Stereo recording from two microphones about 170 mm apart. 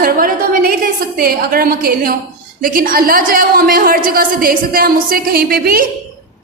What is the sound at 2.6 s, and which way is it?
A woman's voice, 55° right (ahead or behind).